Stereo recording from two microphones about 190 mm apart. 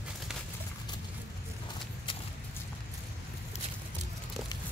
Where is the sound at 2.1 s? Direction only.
25° left (ahead or behind).